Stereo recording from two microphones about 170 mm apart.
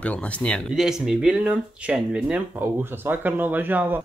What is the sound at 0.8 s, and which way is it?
Speech, 5° right (ahead or behind).